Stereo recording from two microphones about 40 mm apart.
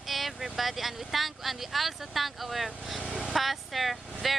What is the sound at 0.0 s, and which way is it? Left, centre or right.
Speech, centre.